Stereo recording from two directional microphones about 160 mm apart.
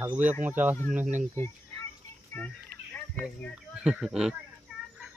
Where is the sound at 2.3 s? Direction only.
10° left (ahead or behind).